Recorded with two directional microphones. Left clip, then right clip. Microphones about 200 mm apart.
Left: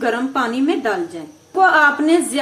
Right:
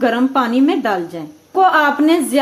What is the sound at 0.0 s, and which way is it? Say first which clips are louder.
A woman's voice: right 4 dB; 45° right (ahead or behind).